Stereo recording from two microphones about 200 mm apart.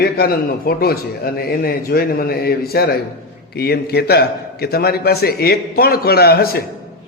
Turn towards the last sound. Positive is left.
turn(degrees=50)  # may be behind; listen again after turning